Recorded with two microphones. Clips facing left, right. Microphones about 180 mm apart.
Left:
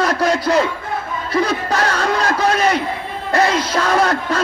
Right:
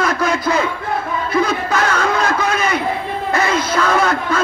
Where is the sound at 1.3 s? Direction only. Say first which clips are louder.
Even; 35° left (ahead or behind).